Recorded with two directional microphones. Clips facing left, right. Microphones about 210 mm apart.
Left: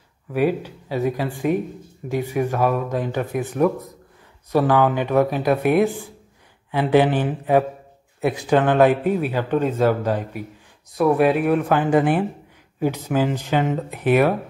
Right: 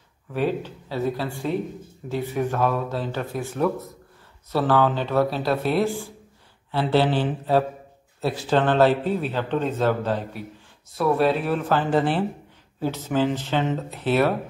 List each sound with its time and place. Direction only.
0.3 s speech: 10° left (ahead or behind)